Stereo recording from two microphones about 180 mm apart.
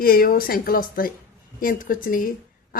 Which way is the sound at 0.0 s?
55° left (ahead or behind).